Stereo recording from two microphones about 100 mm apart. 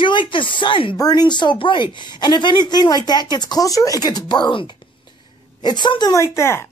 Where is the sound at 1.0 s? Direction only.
40° left (ahead or behind).